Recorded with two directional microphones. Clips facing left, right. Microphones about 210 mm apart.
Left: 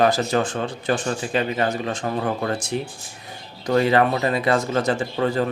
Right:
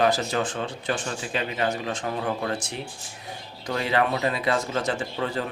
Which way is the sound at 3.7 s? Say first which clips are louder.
Left 6 dB; 45° left (ahead or behind).